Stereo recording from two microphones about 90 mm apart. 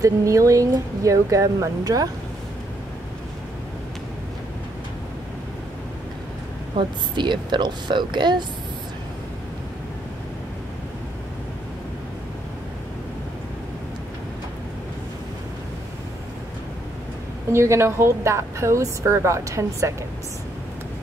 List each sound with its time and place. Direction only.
0.0 s a woman's voice: 35° right (ahead or behind)
6.8 s speech: 60° right (ahead or behind)
17.5 s a woman's voice: 30° right (ahead or behind)